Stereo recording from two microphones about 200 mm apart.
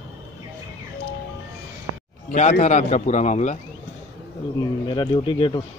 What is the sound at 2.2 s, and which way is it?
A man's voice, 35° left (ahead or behind).